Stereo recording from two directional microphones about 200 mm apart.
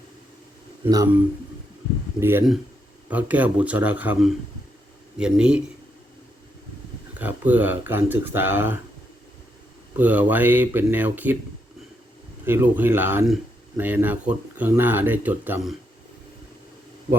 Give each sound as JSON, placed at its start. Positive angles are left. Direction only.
{"t": 0.9, "sound": "speech", "side_deg": -20}
{"t": 3.1, "sound": "speech", "side_deg": -5}
{"t": 7.1, "sound": "speech", "side_deg": -10}
{"t": 10.0, "sound": "speech", "side_deg": -10}
{"t": 12.5, "sound": "speech", "side_deg": -10}